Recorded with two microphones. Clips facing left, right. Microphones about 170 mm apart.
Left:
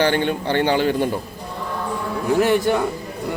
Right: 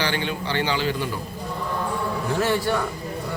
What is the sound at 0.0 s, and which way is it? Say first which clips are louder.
A man's voice: left 7 dB; 50° left (ahead or behind).